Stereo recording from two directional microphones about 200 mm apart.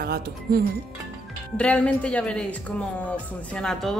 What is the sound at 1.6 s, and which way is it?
Speech, 5° left (ahead or behind).